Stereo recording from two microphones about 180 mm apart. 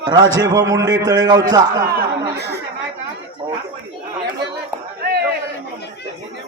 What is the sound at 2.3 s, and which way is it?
Speech, 70° right (ahead or behind).